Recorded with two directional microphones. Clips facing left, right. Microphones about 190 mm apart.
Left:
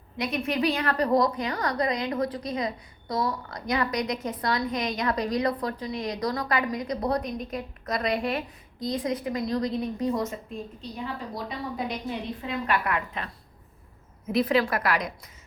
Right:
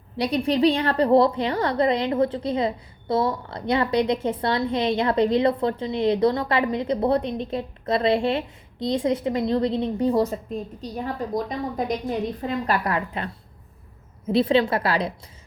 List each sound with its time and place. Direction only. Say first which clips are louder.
0.2 s a woman's voice: right 6 dB; 30° right (ahead or behind)
10.8 s a woman's voice: right 6 dB; 45° right (ahead or behind)